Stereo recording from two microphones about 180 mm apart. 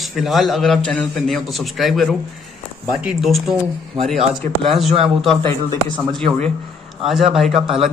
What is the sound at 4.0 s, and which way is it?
Speech, 30° right (ahead or behind).